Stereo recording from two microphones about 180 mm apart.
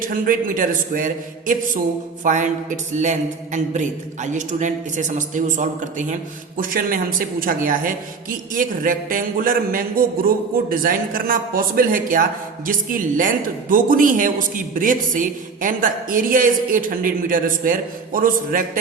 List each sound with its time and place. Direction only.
0.0 s a man's voice: 50° right (ahead or behind)